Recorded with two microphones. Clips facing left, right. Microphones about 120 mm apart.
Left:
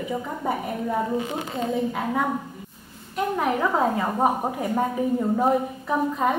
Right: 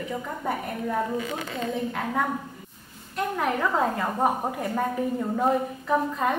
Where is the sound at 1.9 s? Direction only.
5° left (ahead or behind).